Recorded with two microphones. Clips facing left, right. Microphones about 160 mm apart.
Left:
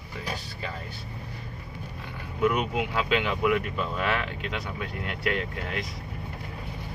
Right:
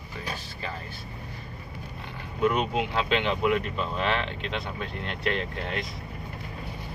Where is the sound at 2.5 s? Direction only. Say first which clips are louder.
Right 1 dB; 10° left (ahead or behind).